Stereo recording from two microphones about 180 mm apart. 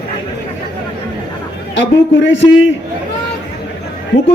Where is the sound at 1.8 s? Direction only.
90° left.